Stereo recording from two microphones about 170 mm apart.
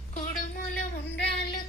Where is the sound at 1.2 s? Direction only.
80° left.